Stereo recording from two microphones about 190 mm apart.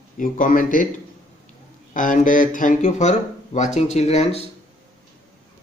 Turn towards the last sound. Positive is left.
turn(degrees=35)  # may be behind; listen again after turning